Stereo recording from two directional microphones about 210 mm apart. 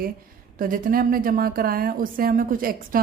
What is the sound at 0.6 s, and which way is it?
A woman's voice, 40° right (ahead or behind).